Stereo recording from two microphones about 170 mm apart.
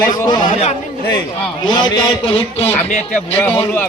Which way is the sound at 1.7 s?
25° left (ahead or behind).